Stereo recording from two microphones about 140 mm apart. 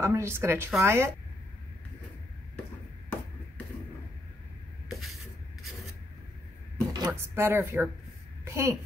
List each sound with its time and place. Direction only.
0.0 s a woman's voice: 20° right (ahead or behind)
6.9 s a sound: 30° right (ahead or behind)
7.3 s a woman's voice: 15° right (ahead or behind)